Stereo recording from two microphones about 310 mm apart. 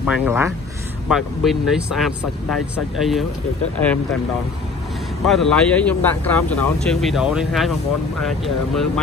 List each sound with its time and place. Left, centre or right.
0.0 s speech: centre
5.2 s speech: centre